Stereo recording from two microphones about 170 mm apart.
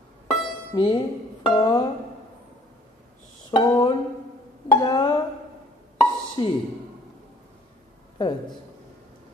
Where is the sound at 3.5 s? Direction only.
25° left (ahead or behind).